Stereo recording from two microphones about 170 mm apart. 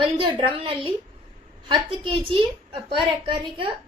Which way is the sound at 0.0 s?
30° right (ahead or behind).